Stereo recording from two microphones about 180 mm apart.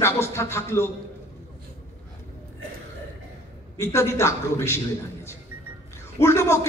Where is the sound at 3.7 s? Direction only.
15° left (ahead or behind).